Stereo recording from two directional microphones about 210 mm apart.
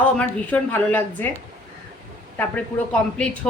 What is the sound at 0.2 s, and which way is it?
A woman's voice, 5° left (ahead or behind).